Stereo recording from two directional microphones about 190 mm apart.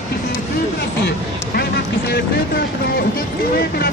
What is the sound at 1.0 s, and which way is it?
Vehicle, 55° left (ahead or behind).